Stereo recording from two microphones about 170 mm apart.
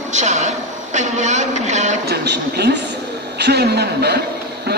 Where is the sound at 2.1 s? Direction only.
80° right.